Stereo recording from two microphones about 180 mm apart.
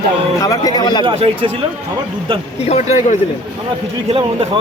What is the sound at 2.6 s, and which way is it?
Speech, 35° left (ahead or behind).